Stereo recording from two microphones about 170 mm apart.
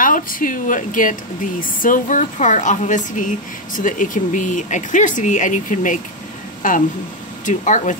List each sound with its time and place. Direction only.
0.0 s speech: 55° left (ahead or behind)